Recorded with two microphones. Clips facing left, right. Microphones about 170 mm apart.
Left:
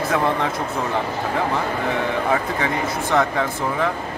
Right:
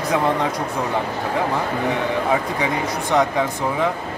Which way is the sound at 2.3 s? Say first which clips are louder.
Right 1 dB; 15° right (ahead or behind).